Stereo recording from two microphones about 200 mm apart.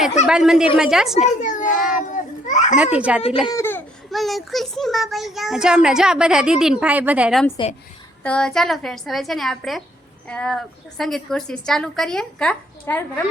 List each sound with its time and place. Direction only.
0.3 s a child's voice: 5° right (ahead or behind)
1.4 s a child's voice: 40° left (ahead or behind)
1.7 s a child's voice: centre (ahead or behind)
2.5 s a child's voice: 35° left (ahead or behind)
2.7 s a child's voice: 5° right (ahead or behind)
3.4 s a sound: 15° left (ahead or behind)
4.1 s a child's voice: centre (ahead or behind)